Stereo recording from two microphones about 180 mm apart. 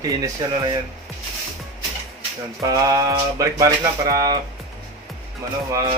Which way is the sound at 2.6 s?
20° right (ahead or behind).